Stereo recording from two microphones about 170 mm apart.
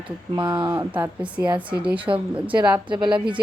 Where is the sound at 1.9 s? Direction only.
30° right (ahead or behind).